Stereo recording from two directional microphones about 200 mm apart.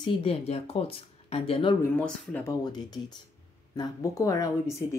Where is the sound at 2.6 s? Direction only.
20° left (ahead or behind).